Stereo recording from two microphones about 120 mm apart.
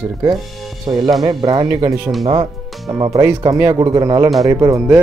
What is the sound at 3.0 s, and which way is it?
Speech, 25° right (ahead or behind).